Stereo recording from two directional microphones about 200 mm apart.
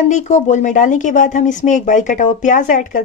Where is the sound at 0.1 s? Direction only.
35° left (ahead or behind).